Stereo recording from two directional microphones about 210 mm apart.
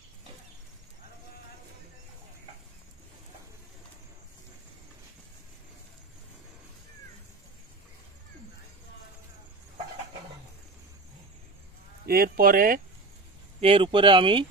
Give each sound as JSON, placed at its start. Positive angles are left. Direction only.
{"t": 12.1, "sound": "speech", "side_deg": -45}
{"t": 13.6, "sound": "speech", "side_deg": -25}